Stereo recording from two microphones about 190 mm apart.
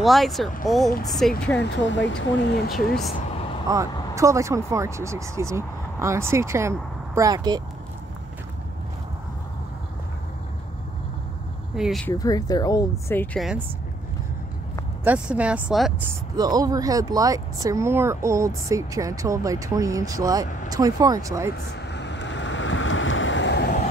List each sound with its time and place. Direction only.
0.0 s speech: centre (ahead or behind)
1.6 s speech: 70° left (ahead or behind)
3.6 s speech: 20° right (ahead or behind)
11.7 s speech: centre (ahead or behind)
12.1 s speech: 20° left (ahead or behind)
15.0 s speech: 5° right (ahead or behind)
16.3 s speech: 20° right (ahead or behind)
21.9 s waves: 70° left (ahead or behind)